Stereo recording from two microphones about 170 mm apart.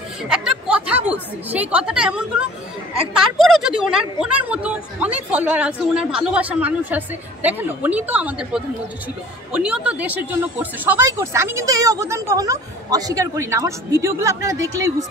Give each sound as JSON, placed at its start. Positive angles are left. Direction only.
{"t": 0.3, "sound": "speech", "side_deg": -5}